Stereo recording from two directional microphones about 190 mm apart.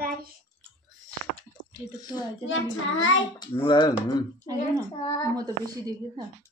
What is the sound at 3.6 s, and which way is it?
Speech, 25° left (ahead or behind).